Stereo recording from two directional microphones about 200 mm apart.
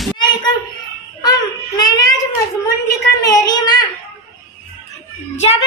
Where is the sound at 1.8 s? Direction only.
20° left (ahead or behind).